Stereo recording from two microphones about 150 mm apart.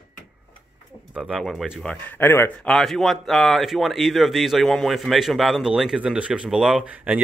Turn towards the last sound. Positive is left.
turn(degrees=-10)  # may be behind; listen again after turning